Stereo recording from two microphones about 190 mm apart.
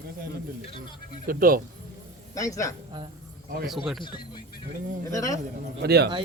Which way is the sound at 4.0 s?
25° left (ahead or behind).